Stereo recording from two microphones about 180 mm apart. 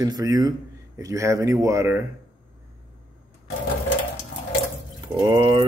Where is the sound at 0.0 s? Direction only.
20° right (ahead or behind).